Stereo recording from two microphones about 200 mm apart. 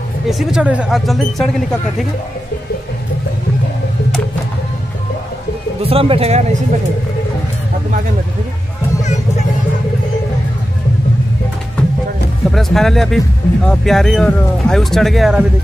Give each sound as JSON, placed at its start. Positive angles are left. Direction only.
{"t": 0.3, "sound": "speech", "side_deg": 0}
{"t": 5.8, "sound": "speech", "side_deg": -30}
{"t": 12.4, "sound": "speech", "side_deg": 0}